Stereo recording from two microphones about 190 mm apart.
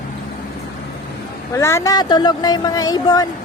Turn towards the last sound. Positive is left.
turn(degrees=20)  # may be behind; listen again after turning